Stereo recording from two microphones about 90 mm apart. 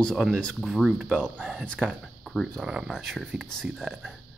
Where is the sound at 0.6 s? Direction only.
5° right (ahead or behind).